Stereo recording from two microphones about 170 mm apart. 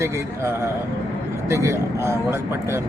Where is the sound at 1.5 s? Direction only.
15° right (ahead or behind).